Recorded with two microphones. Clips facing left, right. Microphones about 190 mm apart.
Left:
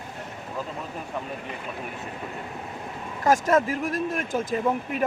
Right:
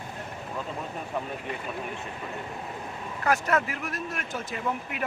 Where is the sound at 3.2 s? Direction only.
45° left (ahead or behind).